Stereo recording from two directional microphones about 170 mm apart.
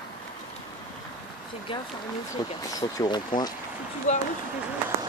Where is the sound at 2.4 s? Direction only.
20° left (ahead or behind).